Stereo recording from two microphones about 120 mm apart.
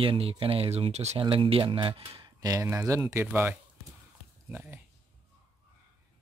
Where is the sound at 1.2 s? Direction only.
50° right (ahead or behind); by 4.8 s 15° right (ahead or behind).